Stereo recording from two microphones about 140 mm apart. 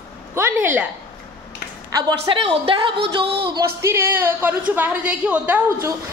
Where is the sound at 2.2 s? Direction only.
45° right (ahead or behind).